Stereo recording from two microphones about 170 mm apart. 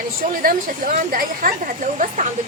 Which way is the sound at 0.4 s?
55° right (ahead or behind).